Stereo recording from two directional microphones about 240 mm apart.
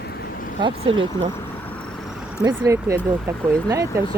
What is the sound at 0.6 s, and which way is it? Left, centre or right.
Speech, right.